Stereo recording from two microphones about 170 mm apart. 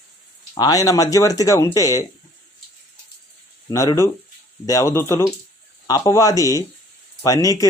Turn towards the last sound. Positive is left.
turn(degrees=20)  # may be behind; listen again after turning